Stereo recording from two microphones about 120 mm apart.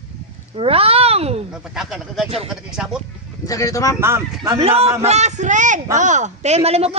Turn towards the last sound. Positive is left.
turn(degrees=-60)  # may be behind; listen again after turning